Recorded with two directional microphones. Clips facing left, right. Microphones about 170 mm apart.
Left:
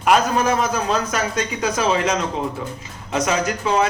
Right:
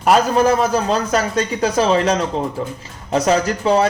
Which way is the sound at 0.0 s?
35° right (ahead or behind).